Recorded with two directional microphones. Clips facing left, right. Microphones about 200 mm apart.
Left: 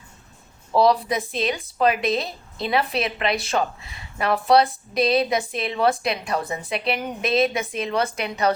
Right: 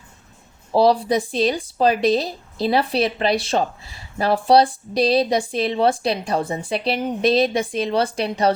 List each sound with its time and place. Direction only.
0.7 s speech: 30° right (ahead or behind)